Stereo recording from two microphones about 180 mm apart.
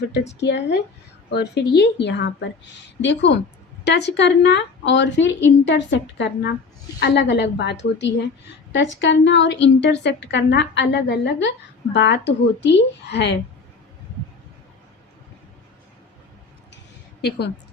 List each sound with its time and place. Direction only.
0.3 s a woman's voice: 75° left (ahead or behind)